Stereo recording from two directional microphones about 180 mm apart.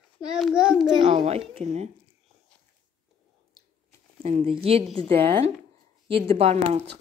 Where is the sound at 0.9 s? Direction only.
25° right (ahead or behind).